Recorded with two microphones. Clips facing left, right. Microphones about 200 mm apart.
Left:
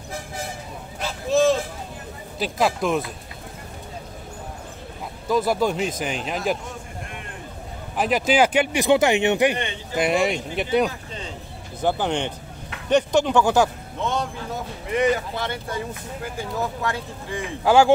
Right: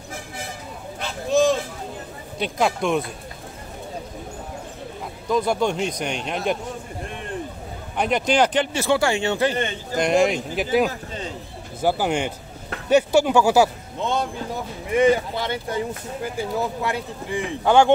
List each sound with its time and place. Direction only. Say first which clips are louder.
1.0 s a sound: even; centre (ahead or behind)
2.3 s a man's voice: even; centre (ahead or behind)
5.3 s a man's voice: even; 5° left (ahead or behind)
8.0 s speech: even; 5° left (ahead or behind)
9.9 s a man's voice: right 2 dB; 5° left (ahead or behind)
15.3 s a man's voice: right 3 dB; 15° right (ahead or behind)
17.6 s a man's voice: even; 5° left (ahead or behind)